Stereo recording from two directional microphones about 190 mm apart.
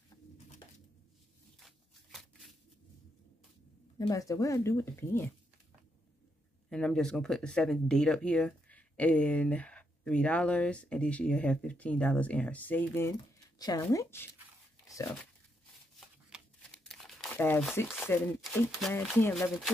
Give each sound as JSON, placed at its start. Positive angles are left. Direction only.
{"t": 4.0, "sound": "speech", "side_deg": 15}
{"t": 6.7, "sound": "a woman's voice", "side_deg": 5}
{"t": 14.9, "sound": "dog", "side_deg": 15}
{"t": 16.3, "sound": "a sound", "side_deg": -5}
{"t": 16.8, "sound": "crumpling", "side_deg": 0}
{"t": 17.4, "sound": "speech", "side_deg": 10}